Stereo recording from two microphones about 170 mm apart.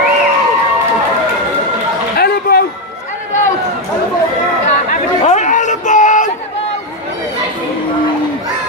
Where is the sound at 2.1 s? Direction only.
65° left (ahead or behind).